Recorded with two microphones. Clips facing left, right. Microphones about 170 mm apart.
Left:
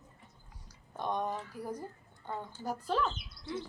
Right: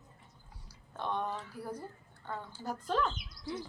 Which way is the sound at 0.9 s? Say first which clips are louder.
Left 1 dB; 15° left (ahead or behind).